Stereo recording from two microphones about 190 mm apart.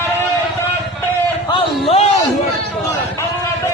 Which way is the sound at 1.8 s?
30° left (ahead or behind).